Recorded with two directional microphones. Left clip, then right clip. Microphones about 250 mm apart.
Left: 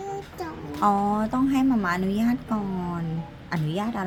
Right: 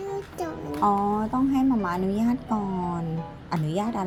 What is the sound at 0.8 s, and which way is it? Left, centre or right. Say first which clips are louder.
A woman's voice: left 1 dB; centre.